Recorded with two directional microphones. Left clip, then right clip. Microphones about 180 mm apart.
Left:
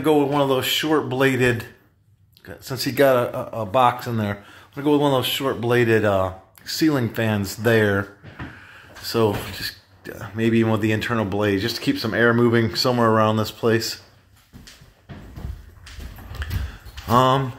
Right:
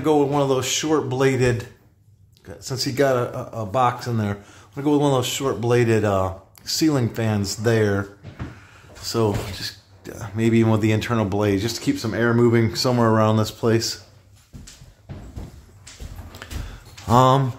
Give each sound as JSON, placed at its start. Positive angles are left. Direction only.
{"t": 0.0, "sound": "speech", "side_deg": -5}
{"t": 16.4, "sound": "a sound", "side_deg": -25}
{"t": 17.0, "sound": "speech", "side_deg": -20}